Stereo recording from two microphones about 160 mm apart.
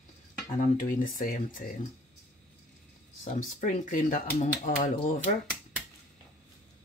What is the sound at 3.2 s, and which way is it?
Speech, 55° left (ahead or behind).